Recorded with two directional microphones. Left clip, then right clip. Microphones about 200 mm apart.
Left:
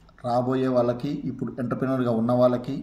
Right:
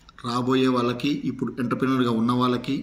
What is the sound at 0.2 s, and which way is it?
A man's voice, 50° left (ahead or behind).